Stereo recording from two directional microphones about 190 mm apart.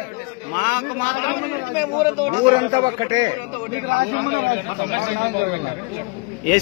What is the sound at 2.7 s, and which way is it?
Speech, 25° right (ahead or behind).